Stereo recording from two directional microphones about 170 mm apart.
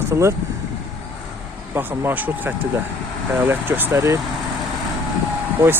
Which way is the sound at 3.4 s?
15° right (ahead or behind).